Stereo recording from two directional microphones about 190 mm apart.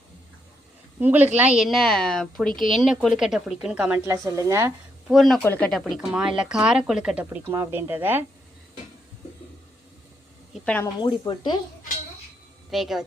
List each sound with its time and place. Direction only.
0.9 s a woman's voice: 10° right (ahead or behind)
5.1 s a woman's voice: centre (ahead or behind)
10.5 s a woman's voice: 5° left (ahead or behind)
11.0 s speech: 25° left (ahead or behind)
12.7 s a woman's voice: centre (ahead or behind)